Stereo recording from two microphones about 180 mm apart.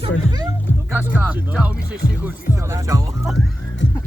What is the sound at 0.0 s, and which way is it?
Speech, 25° right (ahead or behind).